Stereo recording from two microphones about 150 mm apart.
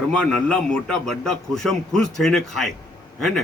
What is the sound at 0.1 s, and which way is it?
A man's voice, 5° left (ahead or behind).